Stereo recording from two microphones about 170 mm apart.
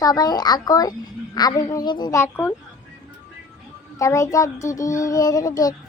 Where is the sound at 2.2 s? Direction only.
10° left (ahead or behind).